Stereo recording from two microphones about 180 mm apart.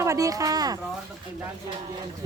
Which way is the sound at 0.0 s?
15° right (ahead or behind).